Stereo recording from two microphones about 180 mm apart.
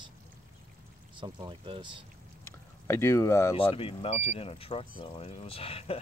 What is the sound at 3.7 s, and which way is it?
Speech, 30° left (ahead or behind).